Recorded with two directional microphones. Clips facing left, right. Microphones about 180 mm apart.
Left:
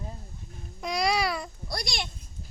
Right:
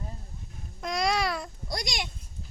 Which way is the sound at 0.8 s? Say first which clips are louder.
Left 1 dB; centre (ahead or behind).